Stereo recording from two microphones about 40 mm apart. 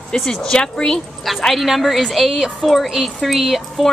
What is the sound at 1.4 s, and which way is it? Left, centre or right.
A woman's voice, centre.